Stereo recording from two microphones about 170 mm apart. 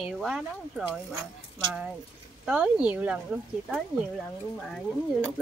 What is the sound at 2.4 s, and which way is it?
Speech, 5° right (ahead or behind).